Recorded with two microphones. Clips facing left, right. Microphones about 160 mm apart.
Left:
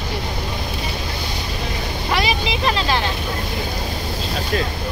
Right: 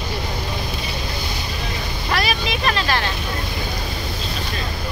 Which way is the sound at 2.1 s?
15° left (ahead or behind).